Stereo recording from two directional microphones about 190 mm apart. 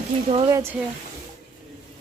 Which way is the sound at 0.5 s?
10° right (ahead or behind).